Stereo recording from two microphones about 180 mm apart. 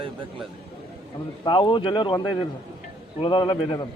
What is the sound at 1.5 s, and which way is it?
Speech, 25° left (ahead or behind).